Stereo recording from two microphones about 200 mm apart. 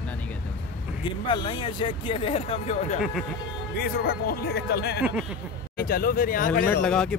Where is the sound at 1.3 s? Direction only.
25° left (ahead or behind).